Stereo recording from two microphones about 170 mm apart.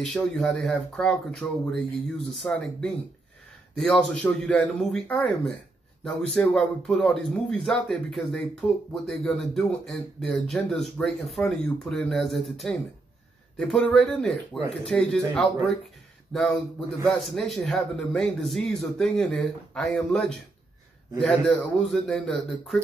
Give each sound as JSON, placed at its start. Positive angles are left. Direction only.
{"t": 0.0, "sound": "speech", "side_deg": 0}